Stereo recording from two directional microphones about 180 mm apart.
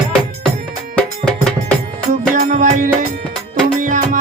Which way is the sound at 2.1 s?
45° right (ahead or behind).